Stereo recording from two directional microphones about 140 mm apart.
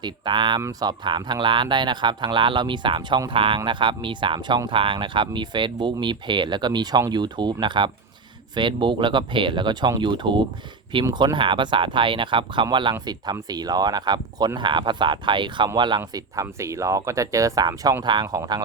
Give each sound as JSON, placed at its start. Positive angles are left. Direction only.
{"t": 0.0, "sound": "speech", "side_deg": -35}
{"t": 16.0, "sound": "speech", "side_deg": -25}